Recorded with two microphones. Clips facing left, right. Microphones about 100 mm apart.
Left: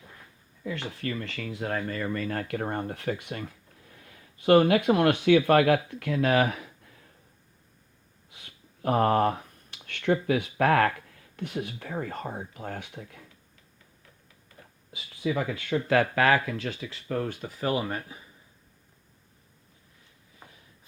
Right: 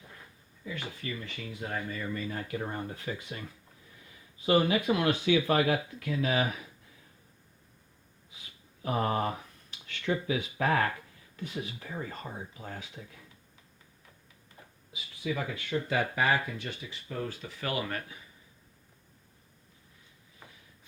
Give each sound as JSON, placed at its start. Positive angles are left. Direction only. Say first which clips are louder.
{"t": 0.6, "sound": "speech", "louder": "left 6 dB", "side_deg": 65}
{"t": 8.3, "sound": "speech", "louder": "left 2 dB", "side_deg": 60}
{"t": 15.2, "sound": "speech", "louder": "left 5 dB", "side_deg": 60}
{"t": 15.9, "sound": "speech", "louder": "left 6 dB", "side_deg": 90}
{"t": 17.6, "sound": "speech", "louder": "left 5 dB", "side_deg": 30}